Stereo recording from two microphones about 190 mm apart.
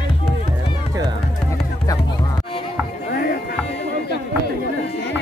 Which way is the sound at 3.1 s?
55° left (ahead or behind).